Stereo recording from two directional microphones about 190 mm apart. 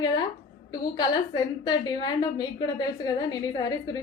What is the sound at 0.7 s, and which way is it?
A woman's voice, 20° left (ahead or behind).